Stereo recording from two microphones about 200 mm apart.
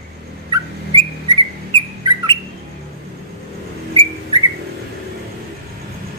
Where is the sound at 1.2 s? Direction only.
25° right (ahead or behind).